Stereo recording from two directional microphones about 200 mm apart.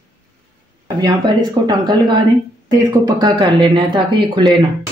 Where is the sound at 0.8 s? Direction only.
20° right (ahead or behind).